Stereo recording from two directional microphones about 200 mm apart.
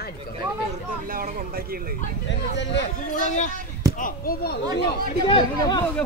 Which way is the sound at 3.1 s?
35° left (ahead or behind).